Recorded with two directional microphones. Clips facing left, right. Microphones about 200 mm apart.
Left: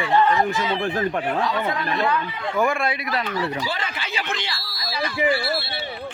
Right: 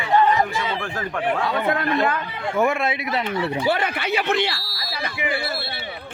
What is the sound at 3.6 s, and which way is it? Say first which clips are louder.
Speech: right 7 dB; 60° right (ahead or behind).